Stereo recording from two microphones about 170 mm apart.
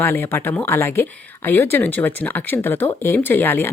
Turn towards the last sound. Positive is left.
turn(degrees=10)  # may be behind; listen again after turning